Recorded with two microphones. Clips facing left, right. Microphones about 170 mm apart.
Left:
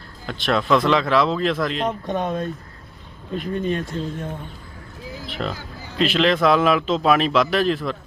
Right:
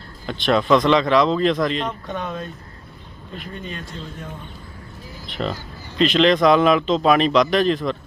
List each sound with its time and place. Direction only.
0.3 s a man's voice: centre (ahead or behind)
2.1 s speech: 40° left (ahead or behind)
5.2 s a man's voice: centre (ahead or behind)